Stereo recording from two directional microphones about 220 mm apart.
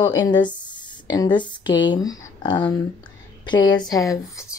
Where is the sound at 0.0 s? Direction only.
20° left (ahead or behind).